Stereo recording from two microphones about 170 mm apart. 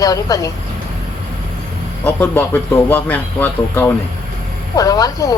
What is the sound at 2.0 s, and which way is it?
Speech, 10° left (ahead or behind).